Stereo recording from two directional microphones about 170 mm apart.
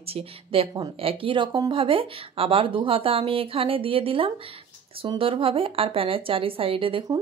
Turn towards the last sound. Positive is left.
turn(degrees=-30)  # may be behind; listen again after turning